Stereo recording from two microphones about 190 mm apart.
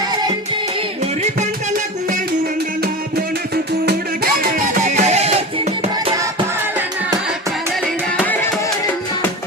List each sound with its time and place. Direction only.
3.5 s music: 55° right (ahead or behind)
4.9 s music: 35° right (ahead or behind)
8.2 s music: 10° left (ahead or behind)